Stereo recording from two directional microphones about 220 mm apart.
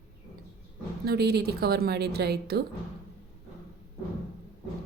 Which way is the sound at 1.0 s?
45° right (ahead or behind).